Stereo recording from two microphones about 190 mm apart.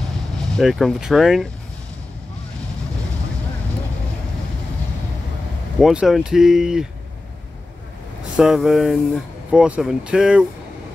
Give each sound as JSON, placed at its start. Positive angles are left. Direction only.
{"t": 0.5, "sound": "speech", "side_deg": 0}
{"t": 5.8, "sound": "speech", "side_deg": 0}
{"t": 8.4, "sound": "speech", "side_deg": 0}